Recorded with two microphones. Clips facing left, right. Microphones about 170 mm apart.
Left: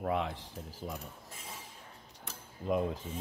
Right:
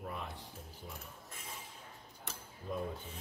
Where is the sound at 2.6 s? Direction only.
90° left.